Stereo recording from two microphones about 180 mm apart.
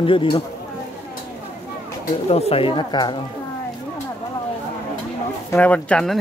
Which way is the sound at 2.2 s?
35° left (ahead or behind).